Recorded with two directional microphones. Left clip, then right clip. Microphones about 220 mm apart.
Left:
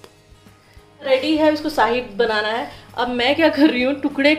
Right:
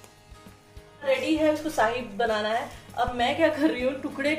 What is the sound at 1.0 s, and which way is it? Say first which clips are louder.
A woman's voice: left 7 dB; 40° left (ahead or behind).